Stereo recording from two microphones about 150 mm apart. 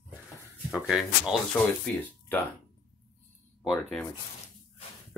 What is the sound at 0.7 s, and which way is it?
Speech, centre (ahead or behind).